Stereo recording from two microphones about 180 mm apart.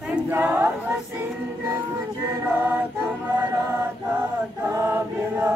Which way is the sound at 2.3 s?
10° right (ahead or behind).